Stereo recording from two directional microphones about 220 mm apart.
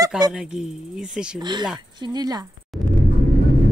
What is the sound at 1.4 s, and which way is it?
Speech, 20° right (ahead or behind).